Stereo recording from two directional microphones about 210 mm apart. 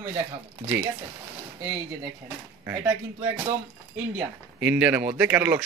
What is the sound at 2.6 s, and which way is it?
Speech, 10° right (ahead or behind).